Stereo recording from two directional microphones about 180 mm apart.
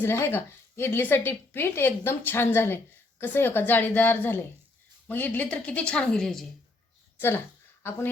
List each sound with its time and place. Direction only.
0.0 s a woman's voice: 10° left (ahead or behind)